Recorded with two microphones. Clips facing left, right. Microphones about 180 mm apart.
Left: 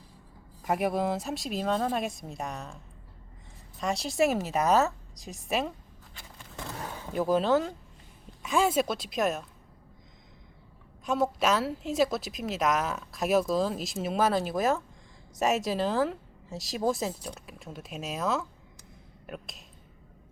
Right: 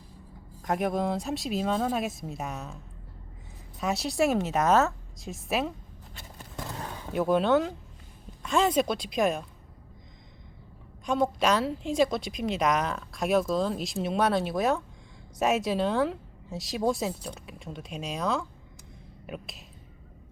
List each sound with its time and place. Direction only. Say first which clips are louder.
0.6 s a woman's voice: even; 5° left (ahead or behind)
3.8 s a woman's voice: even; centre (ahead or behind)
7.1 s a woman's voice: right 1 dB; centre (ahead or behind)
11.0 s a woman's voice: right 1 dB; 5° left (ahead or behind)